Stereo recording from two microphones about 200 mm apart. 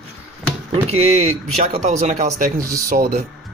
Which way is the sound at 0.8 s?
30° right (ahead or behind).